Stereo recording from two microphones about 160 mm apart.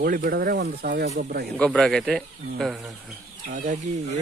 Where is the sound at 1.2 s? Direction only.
75° right (ahead or behind).